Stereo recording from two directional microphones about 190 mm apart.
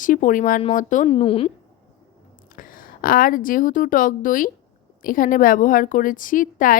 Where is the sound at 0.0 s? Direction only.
45° left (ahead or behind).